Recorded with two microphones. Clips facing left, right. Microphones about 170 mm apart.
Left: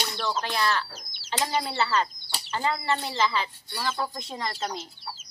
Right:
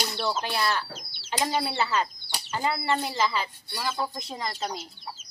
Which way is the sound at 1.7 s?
15° right (ahead or behind).